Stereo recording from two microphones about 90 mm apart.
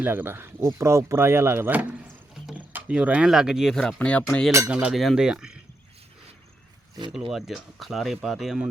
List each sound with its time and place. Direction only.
0.0 s speech: 25° right (ahead or behind); by 3.8 s 5° right (ahead or behind)
3.8 s speech: 10° left (ahead or behind)
4.7 s speech: 15° right (ahead or behind)
7.1 s speech: 5° right (ahead or behind)